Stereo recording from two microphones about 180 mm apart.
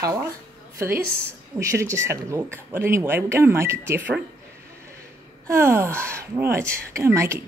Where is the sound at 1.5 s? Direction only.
15° right (ahead or behind).